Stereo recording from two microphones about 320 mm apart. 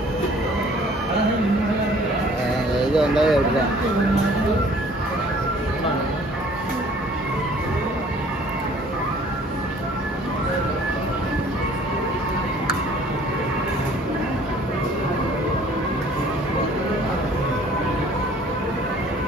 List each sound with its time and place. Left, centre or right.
2.9 s speech: centre